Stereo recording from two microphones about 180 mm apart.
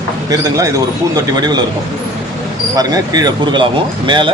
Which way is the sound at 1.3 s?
20° right (ahead or behind).